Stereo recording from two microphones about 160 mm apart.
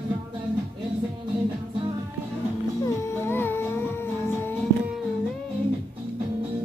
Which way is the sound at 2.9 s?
15° left (ahead or behind).